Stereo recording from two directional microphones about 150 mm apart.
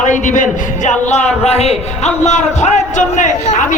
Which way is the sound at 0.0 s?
55° left (ahead or behind).